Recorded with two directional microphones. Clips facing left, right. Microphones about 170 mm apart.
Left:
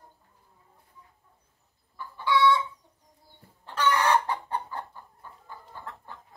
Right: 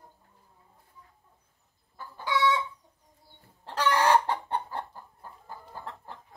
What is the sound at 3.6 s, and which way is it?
Chicken, 35° right (ahead or behind).